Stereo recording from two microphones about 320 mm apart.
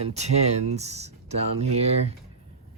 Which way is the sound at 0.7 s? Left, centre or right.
Centre.